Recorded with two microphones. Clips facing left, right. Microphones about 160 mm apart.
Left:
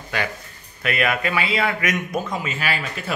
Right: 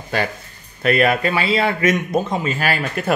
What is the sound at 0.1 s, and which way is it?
A man's voice, 30° right (ahead or behind).